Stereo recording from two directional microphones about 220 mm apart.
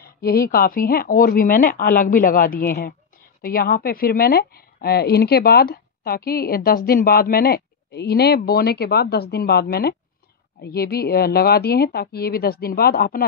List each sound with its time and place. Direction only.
0.0 s a woman's voice: 45° left (ahead or behind)